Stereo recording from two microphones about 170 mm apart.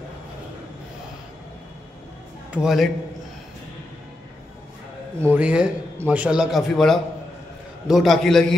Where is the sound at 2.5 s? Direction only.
5° right (ahead or behind).